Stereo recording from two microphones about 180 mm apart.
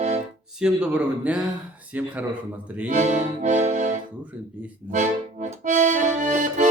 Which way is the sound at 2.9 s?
40° right (ahead or behind).